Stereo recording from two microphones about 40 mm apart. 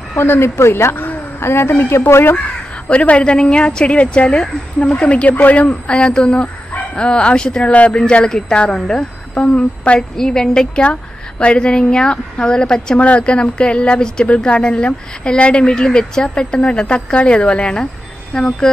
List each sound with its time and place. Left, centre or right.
0.1 s a woman's voice: left
2.3 s speech: left
5.3 s a woman's voice: left
5.9 s a woman's voice: left
9.3 s a woman's voice: left
9.9 s a woman's voice: centre
10.8 s speech: left
13.0 s speech: left